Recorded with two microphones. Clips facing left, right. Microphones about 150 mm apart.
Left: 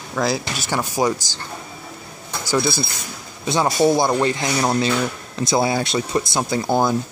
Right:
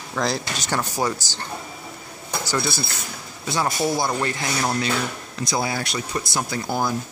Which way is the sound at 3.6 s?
25° left (ahead or behind).